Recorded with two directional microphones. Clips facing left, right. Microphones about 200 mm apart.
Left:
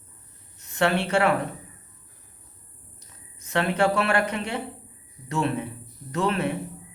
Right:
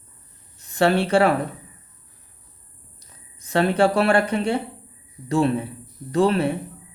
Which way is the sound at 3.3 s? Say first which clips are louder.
Right 5 dB; 35° right (ahead or behind).